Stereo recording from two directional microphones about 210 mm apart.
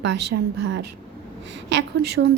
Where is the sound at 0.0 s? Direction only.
55° right (ahead or behind).